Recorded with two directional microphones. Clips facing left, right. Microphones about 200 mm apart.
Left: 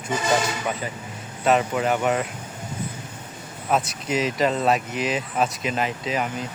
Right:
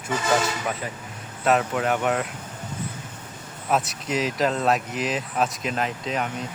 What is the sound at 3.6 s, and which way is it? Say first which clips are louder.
Speech: left 1 dB; centre (ahead or behind).